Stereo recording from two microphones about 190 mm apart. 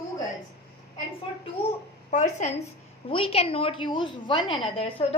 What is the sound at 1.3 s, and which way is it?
Speech, 25° left (ahead or behind).